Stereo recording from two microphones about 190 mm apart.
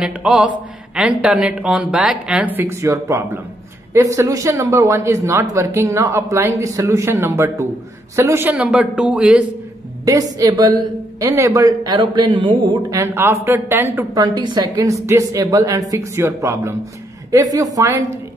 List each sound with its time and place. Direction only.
0.0 s a woman's voice: 5° right (ahead or behind)
10.0 s a woman's voice: 20° right (ahead or behind)
12.9 s a woman's voice: 15° right (ahead or behind)